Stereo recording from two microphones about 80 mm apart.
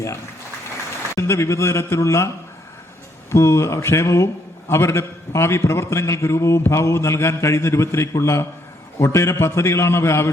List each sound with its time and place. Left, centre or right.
1.1 s a man's voice: left
3.3 s a man's voice: left